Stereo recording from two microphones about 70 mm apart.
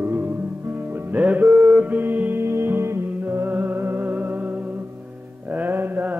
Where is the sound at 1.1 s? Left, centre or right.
Right.